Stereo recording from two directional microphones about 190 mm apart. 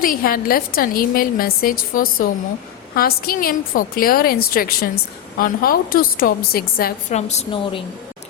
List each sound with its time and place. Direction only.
0.0 s a woman's voice: 50° left (ahead or behind)
7.1 s a woman's voice: 35° left (ahead or behind)